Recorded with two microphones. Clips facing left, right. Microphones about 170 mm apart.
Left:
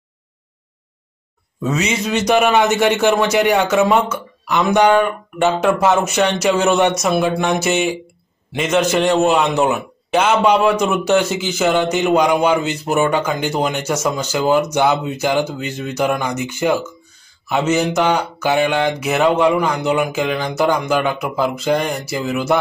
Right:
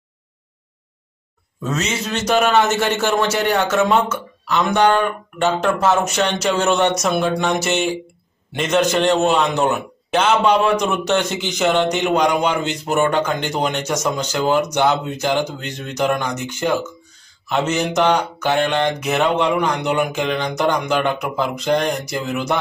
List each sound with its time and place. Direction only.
1.6 s a man's voice: 10° left (ahead or behind)